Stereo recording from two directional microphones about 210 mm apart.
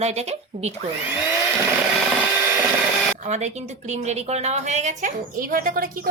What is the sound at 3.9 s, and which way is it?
A woman's voice, 30° right (ahead or behind).